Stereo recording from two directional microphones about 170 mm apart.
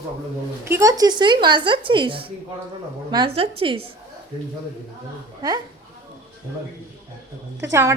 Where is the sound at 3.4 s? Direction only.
30° right (ahead or behind).